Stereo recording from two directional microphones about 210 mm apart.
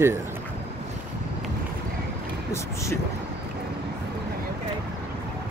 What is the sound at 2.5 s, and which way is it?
Speech, 15° left (ahead or behind).